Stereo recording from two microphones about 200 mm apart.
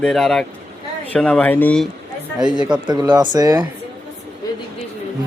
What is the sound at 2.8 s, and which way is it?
Speech, 20° right (ahead or behind).